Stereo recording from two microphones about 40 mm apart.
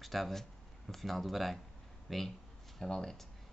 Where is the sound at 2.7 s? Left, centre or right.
Centre.